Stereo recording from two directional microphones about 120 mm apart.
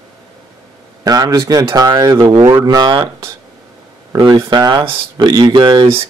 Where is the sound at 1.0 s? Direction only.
35° right (ahead or behind).